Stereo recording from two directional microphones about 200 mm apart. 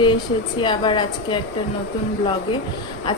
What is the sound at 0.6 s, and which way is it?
Speech, 25° left (ahead or behind).